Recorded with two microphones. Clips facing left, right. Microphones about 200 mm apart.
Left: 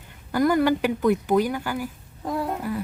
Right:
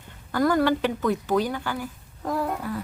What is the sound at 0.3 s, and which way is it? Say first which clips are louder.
A woman's voice: left 1 dB; 15° left (ahead or behind).